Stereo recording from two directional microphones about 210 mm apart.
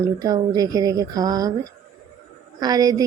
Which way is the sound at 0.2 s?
20° right (ahead or behind).